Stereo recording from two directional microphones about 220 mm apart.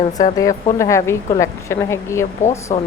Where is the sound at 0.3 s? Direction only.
15° left (ahead or behind).